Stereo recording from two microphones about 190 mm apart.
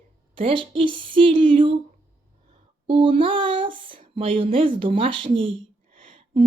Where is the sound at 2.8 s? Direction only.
25° right (ahead or behind).